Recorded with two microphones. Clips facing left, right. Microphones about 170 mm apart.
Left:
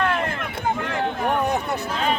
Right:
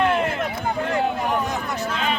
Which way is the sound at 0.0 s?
20° right (ahead or behind).